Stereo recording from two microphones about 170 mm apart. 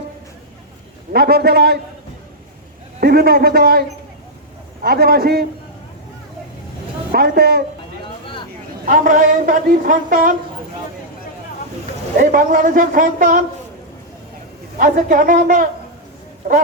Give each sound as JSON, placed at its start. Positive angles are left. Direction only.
{"t": 1.1, "sound": "a man's voice", "side_deg": -65}
{"t": 3.0, "sound": "a man's voice", "side_deg": -65}
{"t": 7.1, "sound": "a man's voice", "side_deg": -65}
{"t": 8.9, "sound": "a woman's voice", "side_deg": -50}
{"t": 12.2, "sound": "a woman's voice", "side_deg": -50}
{"t": 14.8, "sound": "a woman's voice", "side_deg": -50}